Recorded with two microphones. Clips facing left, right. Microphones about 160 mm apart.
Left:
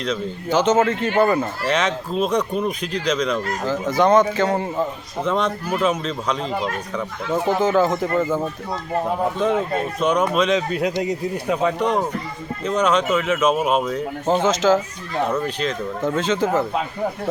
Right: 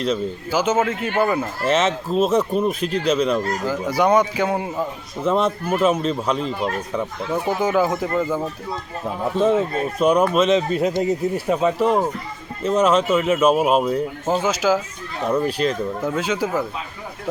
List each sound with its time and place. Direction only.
0.0 s a man's voice: 5° right (ahead or behind)
8.2 s speech: 5° left (ahead or behind)
10.0 s a man's voice: 10° right (ahead or behind)